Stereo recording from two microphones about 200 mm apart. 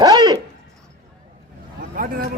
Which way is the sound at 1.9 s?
45° right (ahead or behind).